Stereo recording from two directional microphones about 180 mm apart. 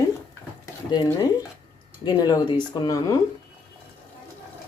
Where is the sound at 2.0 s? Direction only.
20° left (ahead or behind).